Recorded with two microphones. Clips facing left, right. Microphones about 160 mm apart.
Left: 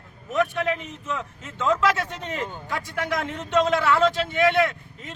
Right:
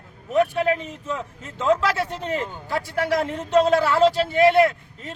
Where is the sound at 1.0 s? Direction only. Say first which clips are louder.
Right 1 dB; 35° right (ahead or behind).